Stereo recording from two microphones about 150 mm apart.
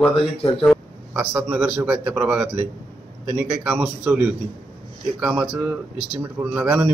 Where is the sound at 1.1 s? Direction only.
5° right (ahead or behind).